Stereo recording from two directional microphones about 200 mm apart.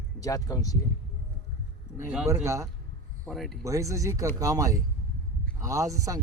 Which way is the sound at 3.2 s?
Centre (ahead or behind).